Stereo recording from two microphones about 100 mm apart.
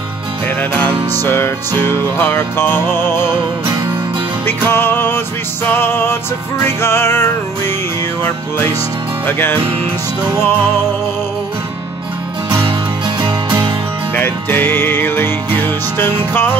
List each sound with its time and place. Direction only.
0.6 s music: 15° left (ahead or behind)
4.5 s music: 20° left (ahead or behind)
9.2 s music: 20° left (ahead or behind)
14.1 s music: 20° left (ahead or behind)